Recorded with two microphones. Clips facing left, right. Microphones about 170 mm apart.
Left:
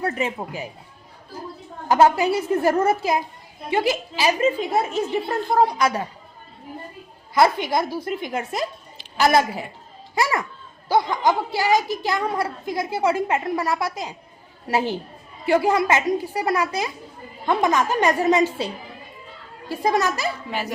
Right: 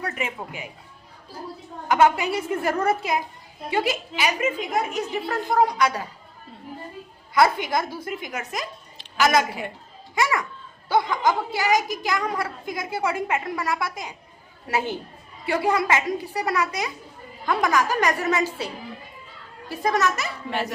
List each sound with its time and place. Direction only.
0.0 s a woman's voice: 30° left (ahead or behind)
1.9 s a child's voice: 30° left (ahead or behind)
7.3 s a child's voice: 25° left (ahead or behind)
11.7 s a child's voice: 15° right (ahead or behind)
12.1 s a child's voice: 25° left (ahead or behind)
20.5 s speech: 5° left (ahead or behind)